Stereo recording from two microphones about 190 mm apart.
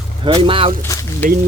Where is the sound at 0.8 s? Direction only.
10° left (ahead or behind).